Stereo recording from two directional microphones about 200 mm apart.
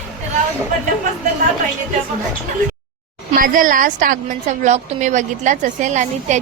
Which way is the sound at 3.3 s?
45° right (ahead or behind).